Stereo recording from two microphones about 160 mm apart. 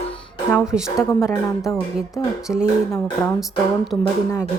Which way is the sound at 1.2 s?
20° left (ahead or behind).